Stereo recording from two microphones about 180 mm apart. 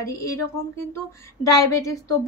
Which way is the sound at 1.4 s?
20° left (ahead or behind).